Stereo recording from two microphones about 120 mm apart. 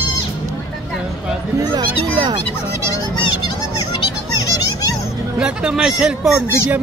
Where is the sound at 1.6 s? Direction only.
40° right (ahead or behind).